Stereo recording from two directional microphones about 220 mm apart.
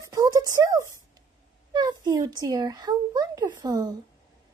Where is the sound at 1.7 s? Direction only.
20° right (ahead or behind).